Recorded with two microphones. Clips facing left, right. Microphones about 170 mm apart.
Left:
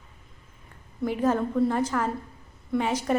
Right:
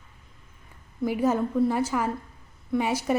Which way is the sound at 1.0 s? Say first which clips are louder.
Even; 10° right (ahead or behind).